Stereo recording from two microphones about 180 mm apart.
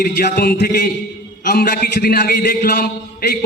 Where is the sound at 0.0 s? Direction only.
60° left (ahead or behind).